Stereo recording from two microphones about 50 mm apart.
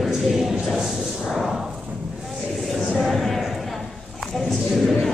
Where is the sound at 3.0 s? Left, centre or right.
Centre.